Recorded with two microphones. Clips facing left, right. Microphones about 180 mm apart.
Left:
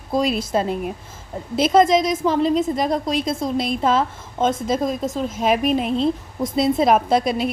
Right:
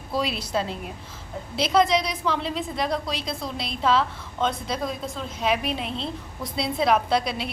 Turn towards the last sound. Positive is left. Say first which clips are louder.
# left 6 dB
turn(degrees=45)  # may be behind; listen again after turning